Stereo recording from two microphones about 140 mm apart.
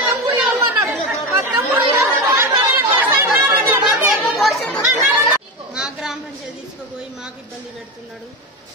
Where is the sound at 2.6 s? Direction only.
20° right (ahead or behind).